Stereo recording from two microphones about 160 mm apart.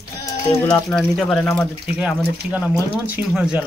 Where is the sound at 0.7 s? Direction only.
5° left (ahead or behind).